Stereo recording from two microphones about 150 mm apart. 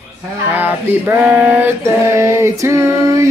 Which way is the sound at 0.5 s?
10° right (ahead or behind).